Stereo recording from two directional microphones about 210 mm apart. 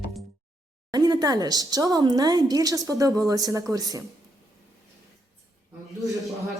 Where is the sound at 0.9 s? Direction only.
20° right (ahead or behind).